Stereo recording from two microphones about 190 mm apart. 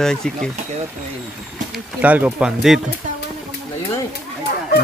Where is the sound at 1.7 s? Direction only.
10° right (ahead or behind).